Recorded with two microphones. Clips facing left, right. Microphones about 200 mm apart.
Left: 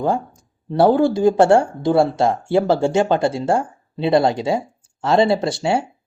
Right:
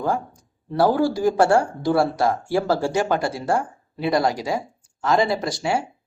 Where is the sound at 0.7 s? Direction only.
25° left (ahead or behind).